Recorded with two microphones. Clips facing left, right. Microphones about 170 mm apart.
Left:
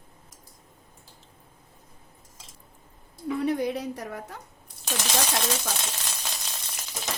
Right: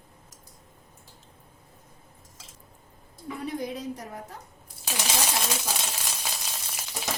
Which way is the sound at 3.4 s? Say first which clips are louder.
Left 4 dB; 70° left (ahead or behind).